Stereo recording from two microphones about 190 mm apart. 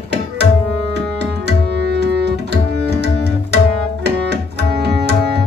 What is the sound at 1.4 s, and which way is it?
Tabla, 60° right (ahead or behind).